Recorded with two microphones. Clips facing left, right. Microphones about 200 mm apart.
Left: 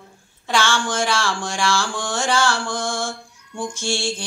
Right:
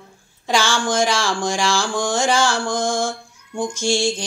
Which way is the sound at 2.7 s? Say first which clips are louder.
Right 4 dB; 45° right (ahead or behind).